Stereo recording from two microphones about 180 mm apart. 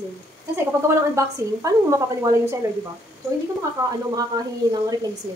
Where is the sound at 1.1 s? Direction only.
15° right (ahead or behind).